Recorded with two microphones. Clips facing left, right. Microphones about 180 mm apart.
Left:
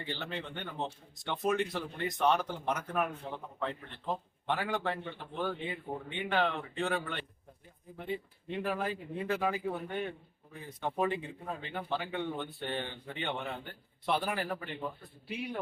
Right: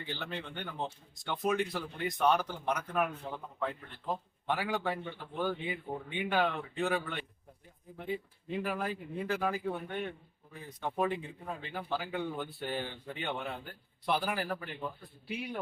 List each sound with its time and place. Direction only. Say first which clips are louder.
0.1 s a man's voice: left 1 dB; centre (ahead or behind)